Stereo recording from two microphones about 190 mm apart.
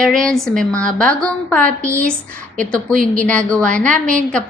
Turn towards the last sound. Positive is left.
turn(degrees=5)  # may be behind; listen again after turning